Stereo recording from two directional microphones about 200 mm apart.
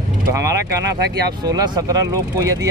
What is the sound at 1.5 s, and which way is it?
Speech, 20° right (ahead or behind).